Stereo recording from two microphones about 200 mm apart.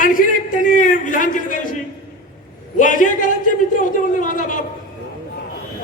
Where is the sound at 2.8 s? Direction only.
40° left (ahead or behind).